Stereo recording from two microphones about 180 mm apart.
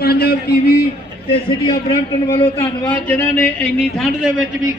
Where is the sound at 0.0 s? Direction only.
60° left (ahead or behind).